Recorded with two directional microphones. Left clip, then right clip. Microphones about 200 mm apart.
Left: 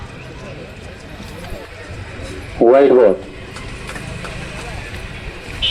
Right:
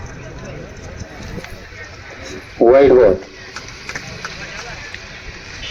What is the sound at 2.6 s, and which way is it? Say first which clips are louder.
Speech: even; 40° left (ahead or behind).